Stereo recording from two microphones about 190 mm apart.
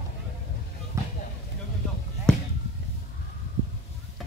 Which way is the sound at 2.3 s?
5° left (ahead or behind).